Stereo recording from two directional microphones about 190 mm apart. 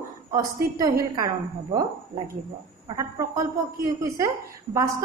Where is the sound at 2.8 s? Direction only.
15° right (ahead or behind).